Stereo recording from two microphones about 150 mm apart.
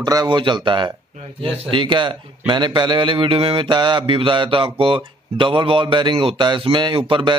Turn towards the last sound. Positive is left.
turn(degrees=-35)  # may be behind; listen again after turning